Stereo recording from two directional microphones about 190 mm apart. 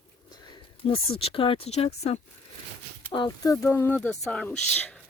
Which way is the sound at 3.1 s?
20° left (ahead or behind).